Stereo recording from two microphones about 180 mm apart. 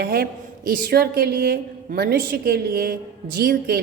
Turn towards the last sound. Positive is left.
turn(degrees=-55)  # may be behind; listen again after turning